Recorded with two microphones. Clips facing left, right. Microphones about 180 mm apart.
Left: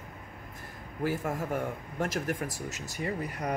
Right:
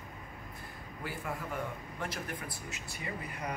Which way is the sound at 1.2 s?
45° left (ahead or behind).